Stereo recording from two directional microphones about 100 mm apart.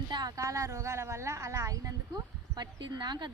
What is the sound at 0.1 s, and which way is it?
A woman's voice, 40° right (ahead or behind).